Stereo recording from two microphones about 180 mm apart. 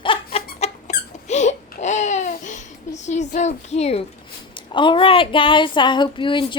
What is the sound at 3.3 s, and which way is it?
Speech, 40° left (ahead or behind).